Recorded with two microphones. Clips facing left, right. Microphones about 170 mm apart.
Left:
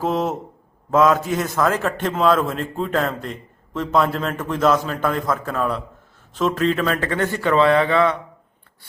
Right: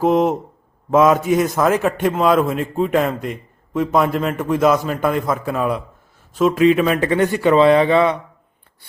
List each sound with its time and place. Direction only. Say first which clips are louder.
0.0 s a man's voice: right 6 dB; 15° right (ahead or behind)